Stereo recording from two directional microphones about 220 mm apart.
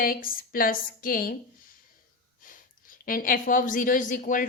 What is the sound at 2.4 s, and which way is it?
A woman's voice, 40° left (ahead or behind).